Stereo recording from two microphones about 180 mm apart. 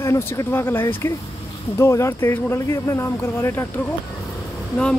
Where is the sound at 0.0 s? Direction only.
15° left (ahead or behind).